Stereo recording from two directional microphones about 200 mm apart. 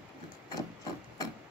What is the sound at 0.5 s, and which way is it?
Rub, 20° left (ahead or behind).